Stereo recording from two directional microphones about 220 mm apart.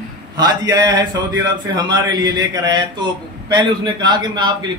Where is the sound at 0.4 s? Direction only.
15° right (ahead or behind).